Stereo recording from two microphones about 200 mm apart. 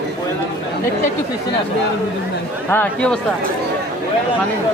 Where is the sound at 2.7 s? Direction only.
5° left (ahead or behind).